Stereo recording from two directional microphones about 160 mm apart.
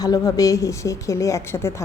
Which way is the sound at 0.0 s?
25° left (ahead or behind).